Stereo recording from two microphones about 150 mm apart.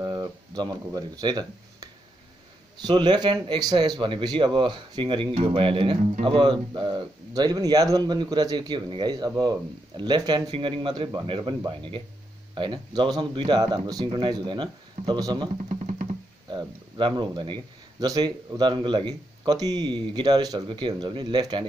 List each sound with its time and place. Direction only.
0.0 s a sound: 25° right (ahead or behind)
2.8 s speech: 30° right (ahead or behind)
15.7 s music: 50° right (ahead or behind)
16.4 s speech: 30° right (ahead or behind)